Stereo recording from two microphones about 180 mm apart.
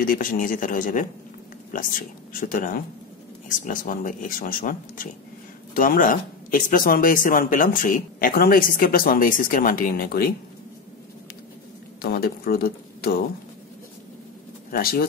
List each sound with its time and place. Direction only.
0.0 s speech: 50° left (ahead or behind)
12.0 s speech: 55° left (ahead or behind)
14.7 s speech: 55° left (ahead or behind)